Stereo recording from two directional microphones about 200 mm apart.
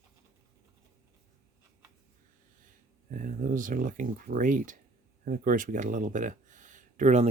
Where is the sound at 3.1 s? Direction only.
40° right (ahead or behind).